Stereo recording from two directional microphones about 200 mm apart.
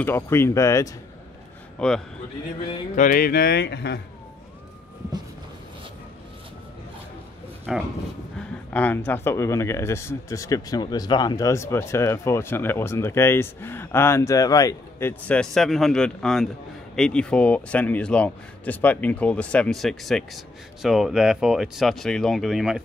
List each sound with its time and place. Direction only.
0.0 s speech: 10° left (ahead or behind)
1.8 s speech: 5° left (ahead or behind)
3.0 s speech: 45° left (ahead or behind)
7.7 s speech: centre (ahead or behind)